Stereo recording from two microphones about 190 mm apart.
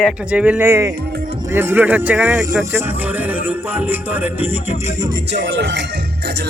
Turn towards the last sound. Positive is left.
turn(degrees=-65)  # may be behind; listen again after turning